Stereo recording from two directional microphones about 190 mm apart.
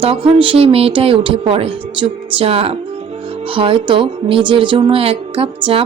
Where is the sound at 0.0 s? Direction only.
30° right (ahead or behind).